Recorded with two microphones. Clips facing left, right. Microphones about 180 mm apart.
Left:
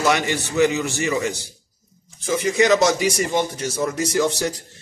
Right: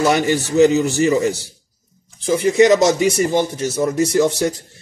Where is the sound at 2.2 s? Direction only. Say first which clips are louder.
Right 5 dB; 20° right (ahead or behind).